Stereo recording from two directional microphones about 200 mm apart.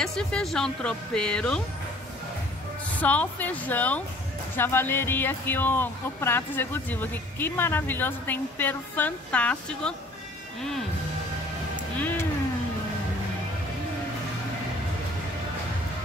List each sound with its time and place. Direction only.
0.0 s speech: 5° left (ahead or behind)
3.0 s speech: 5° left (ahead or behind)